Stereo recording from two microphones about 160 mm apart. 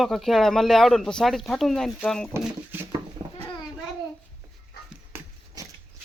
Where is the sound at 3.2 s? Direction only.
40° right (ahead or behind).